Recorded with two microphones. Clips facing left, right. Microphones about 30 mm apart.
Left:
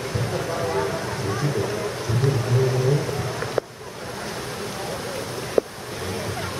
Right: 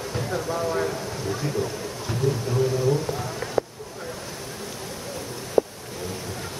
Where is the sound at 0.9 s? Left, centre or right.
Left.